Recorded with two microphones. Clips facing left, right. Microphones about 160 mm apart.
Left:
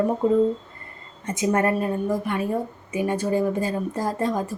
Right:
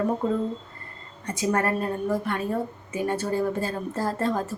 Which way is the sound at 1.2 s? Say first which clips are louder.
Left 3 dB; 20° left (ahead or behind).